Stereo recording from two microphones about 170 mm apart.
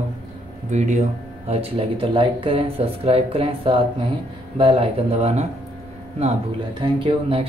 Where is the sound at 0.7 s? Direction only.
45° right (ahead or behind).